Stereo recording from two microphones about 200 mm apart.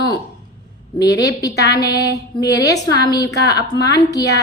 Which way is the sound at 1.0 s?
60° left (ahead or behind).